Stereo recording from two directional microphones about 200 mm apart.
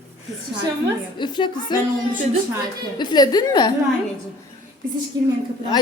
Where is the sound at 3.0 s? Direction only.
20° left (ahead or behind).